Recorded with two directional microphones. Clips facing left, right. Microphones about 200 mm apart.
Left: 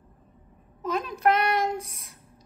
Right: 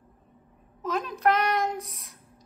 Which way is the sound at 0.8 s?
Centre (ahead or behind).